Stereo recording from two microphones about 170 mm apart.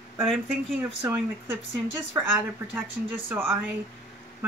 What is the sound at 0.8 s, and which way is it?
Speech, 10° right (ahead or behind).